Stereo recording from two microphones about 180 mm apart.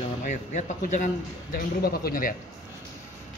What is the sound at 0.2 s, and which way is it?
A man's voice, 40° left (ahead or behind).